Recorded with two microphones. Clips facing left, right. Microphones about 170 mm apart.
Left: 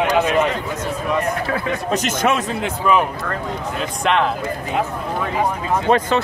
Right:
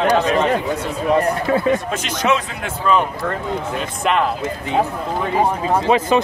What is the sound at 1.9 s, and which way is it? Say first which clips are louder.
Speech: left 1 dB; 45° left (ahead or behind).